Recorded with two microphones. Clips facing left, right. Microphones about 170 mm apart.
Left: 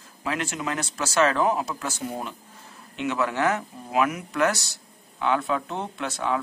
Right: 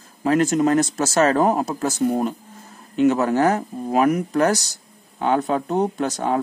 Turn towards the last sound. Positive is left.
turn(degrees=-40)  # may be behind; listen again after turning